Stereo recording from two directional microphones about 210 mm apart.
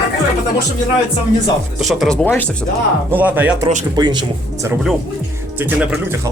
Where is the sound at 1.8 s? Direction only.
Centre (ahead or behind).